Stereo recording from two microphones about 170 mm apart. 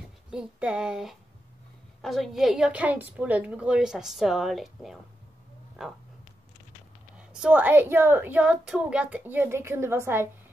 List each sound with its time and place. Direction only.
0.3 s a woman's voice: 5° right (ahead or behind)
7.2 s a woman's voice: 5° right (ahead or behind)